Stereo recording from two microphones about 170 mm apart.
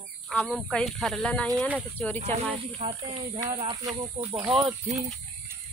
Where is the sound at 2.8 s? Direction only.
30° right (ahead or behind).